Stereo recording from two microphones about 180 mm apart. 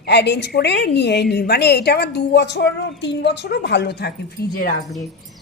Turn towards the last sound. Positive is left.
turn(degrees=55)  # may be behind; listen again after turning